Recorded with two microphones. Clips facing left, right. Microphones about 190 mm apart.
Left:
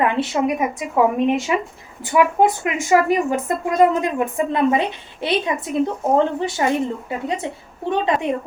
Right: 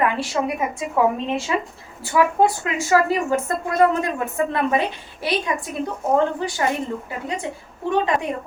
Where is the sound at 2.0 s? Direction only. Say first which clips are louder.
Left 2 dB; 20° left (ahead or behind).